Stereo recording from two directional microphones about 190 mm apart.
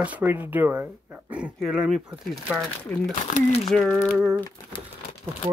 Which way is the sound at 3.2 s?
35° left (ahead or behind).